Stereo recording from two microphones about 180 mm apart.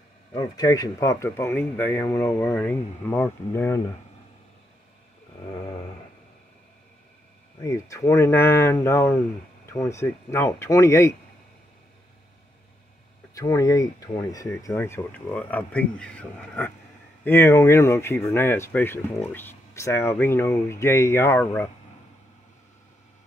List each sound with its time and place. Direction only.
0.3 s speech: 20° left (ahead or behind)
7.6 s speech: 15° left (ahead or behind)
13.3 s speech: 20° left (ahead or behind)